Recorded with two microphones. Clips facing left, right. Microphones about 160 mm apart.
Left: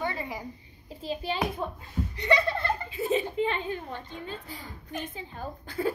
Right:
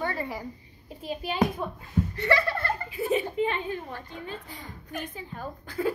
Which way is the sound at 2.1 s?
20° left (ahead or behind).